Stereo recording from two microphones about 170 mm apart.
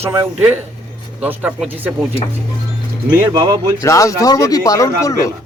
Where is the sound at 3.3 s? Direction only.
20° right (ahead or behind).